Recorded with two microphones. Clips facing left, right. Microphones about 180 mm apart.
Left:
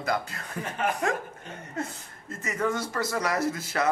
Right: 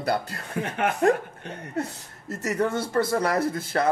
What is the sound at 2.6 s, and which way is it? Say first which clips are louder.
A man's voice: right 4 dB; 30° right (ahead or behind).